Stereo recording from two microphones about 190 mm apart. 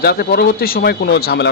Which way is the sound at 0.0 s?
55° left (ahead or behind).